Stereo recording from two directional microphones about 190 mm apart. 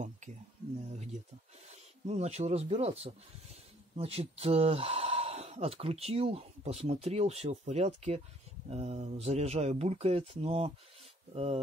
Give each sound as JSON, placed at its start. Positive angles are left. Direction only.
{"t": 1.7, "sound": "speech", "side_deg": -35}